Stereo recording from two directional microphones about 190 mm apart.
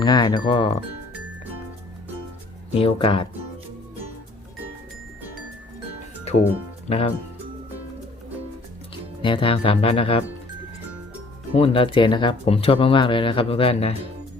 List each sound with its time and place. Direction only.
0.0 s speech: 20° left (ahead or behind)
2.7 s speech: 30° left (ahead or behind)
6.8 s speech: 30° left (ahead or behind)
9.2 s speech: 25° left (ahead or behind)
11.5 s speech: 30° left (ahead or behind)